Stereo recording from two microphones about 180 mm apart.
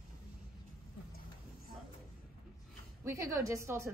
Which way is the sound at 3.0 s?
15° right (ahead or behind).